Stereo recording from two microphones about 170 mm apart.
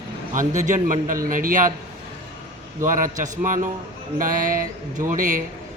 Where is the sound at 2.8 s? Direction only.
50° right (ahead or behind).